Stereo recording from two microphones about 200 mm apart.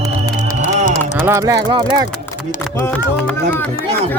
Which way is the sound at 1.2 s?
15° right (ahead or behind).